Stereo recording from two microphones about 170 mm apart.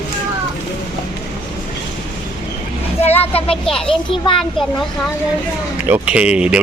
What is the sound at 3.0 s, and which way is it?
Speech, 35° left (ahead or behind).